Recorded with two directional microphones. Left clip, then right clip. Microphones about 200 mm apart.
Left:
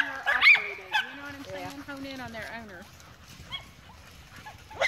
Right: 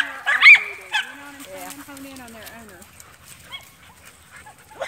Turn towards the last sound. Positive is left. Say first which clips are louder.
# right 2 dB
turn(degrees=45)  # may be behind; listen again after turning